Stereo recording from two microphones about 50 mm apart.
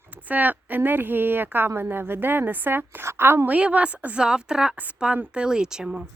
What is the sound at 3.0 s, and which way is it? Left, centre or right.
Speech, right.